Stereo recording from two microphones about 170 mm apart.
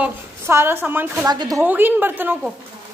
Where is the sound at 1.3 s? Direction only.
25° right (ahead or behind).